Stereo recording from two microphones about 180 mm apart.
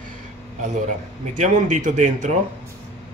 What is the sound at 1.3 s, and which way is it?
Speech, 45° right (ahead or behind).